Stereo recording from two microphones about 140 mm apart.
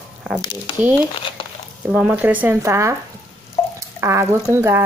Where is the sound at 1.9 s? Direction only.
10° right (ahead or behind).